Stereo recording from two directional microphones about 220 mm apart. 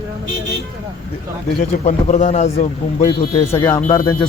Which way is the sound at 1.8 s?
30° left (ahead or behind).